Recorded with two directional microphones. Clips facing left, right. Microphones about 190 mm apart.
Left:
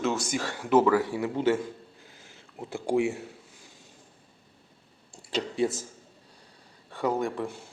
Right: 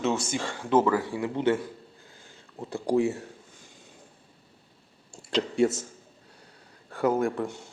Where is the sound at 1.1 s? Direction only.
20° left (ahead or behind).